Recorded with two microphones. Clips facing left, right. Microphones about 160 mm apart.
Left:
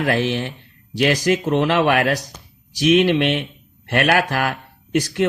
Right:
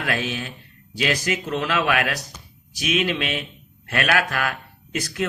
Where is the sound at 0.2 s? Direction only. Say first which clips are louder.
Left 7 dB; 70° left (ahead or behind).